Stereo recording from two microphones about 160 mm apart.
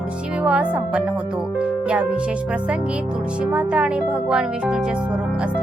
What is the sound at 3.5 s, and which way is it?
Speech, 10° right (ahead or behind).